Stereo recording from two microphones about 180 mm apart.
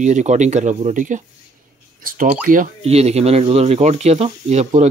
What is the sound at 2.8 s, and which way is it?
Speech, 35° right (ahead or behind).